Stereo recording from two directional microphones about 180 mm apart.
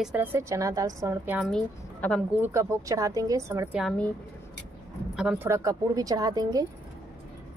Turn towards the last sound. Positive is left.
turn(degrees=-20)  # may be behind; listen again after turning